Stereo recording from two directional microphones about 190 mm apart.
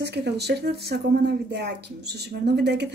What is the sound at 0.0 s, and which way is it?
Speech, 60° right (ahead or behind).